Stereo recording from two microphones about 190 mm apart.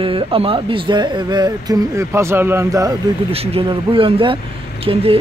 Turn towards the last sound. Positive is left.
turn(degrees=-30)  # may be behind; listen again after turning